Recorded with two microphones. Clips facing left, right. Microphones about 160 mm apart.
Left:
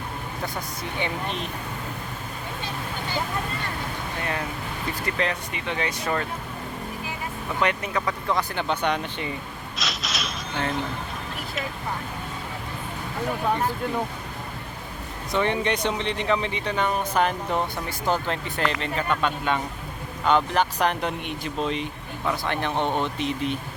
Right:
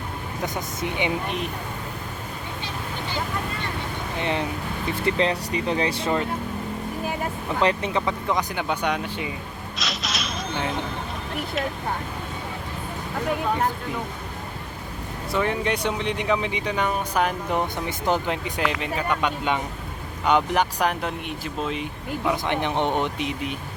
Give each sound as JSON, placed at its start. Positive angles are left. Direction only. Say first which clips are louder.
{"t": 0.4, "sound": "speech", "louder": "right 5 dB", "side_deg": -20}
{"t": 4.2, "sound": "speech", "louder": "right 5 dB", "side_deg": -25}
{"t": 7.6, "sound": "speech", "louder": "right 3 dB", "side_deg": -30}
{"t": 9.7, "sound": "a sound", "louder": "right 1 dB", "side_deg": 0}
{"t": 15.3, "sound": "speech", "louder": "even", "side_deg": -5}